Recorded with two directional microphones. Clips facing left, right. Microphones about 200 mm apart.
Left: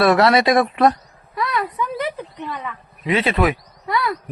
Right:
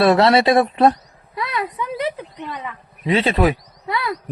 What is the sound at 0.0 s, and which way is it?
Female singing, 25° right (ahead or behind).